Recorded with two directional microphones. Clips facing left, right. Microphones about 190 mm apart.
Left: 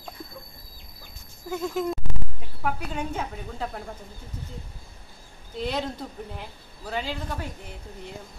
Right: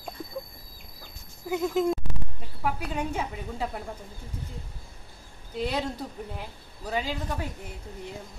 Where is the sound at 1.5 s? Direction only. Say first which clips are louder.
Right 3 dB; 15° right (ahead or behind).